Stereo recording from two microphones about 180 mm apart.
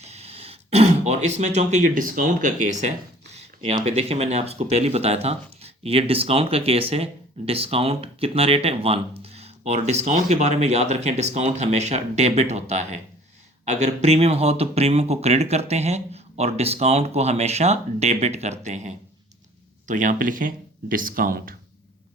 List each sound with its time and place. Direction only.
0.0 s throat clearing: 35° right (ahead or behind)
3.8 s speech: 35° right (ahead or behind); by 21.5 s 50° right (ahead or behind)